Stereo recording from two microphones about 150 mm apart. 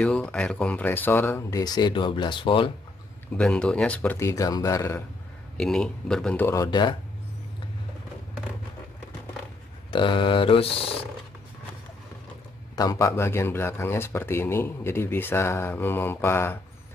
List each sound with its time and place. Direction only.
0.0 s speech: 5° left (ahead or behind)
1.6 s speech: 25° left (ahead or behind)
3.3 s speech: 5° left (ahead or behind)
5.6 s speech: 5° left (ahead or behind)
6.5 s speech: 25° left (ahead or behind)
9.8 s speech: 35° left (ahead or behind)
12.7 s speech: 20° left (ahead or behind)